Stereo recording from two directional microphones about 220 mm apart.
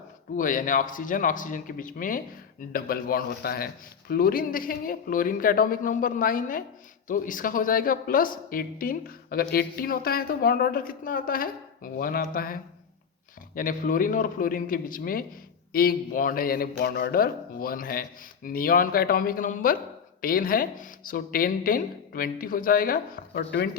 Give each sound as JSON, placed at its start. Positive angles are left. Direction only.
{"t": 0.3, "sound": "a man's voice", "side_deg": 35}